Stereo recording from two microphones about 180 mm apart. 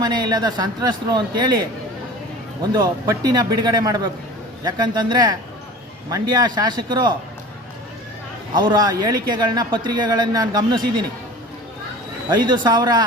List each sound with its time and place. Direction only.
0.0 s speech: 25° right (ahead or behind)
8.5 s speech: 20° right (ahead or behind)
12.3 s speech: 25° right (ahead or behind)